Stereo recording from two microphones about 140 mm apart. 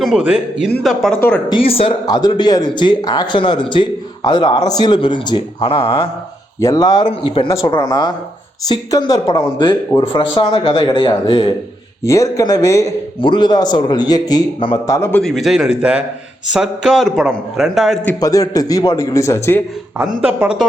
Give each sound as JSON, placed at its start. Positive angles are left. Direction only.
{"t": 0.2, "sound": "a man's voice", "side_deg": -5}
{"t": 1.5, "sound": "speech", "side_deg": 40}
{"t": 2.0, "sound": "a man's voice", "side_deg": 30}
{"t": 6.6, "sound": "a man's voice", "side_deg": 25}
{"t": 12.0, "sound": "a man's voice", "side_deg": 20}
{"t": 13.2, "sound": "a man's voice", "side_deg": 35}
{"t": 14.8, "sound": "a man's voice", "side_deg": 20}
{"t": 15.1, "sound": "a man's voice", "side_deg": 0}
{"t": 18.2, "sound": "a man's voice", "side_deg": 25}
{"t": 20.2, "sound": "a man's voice", "side_deg": -10}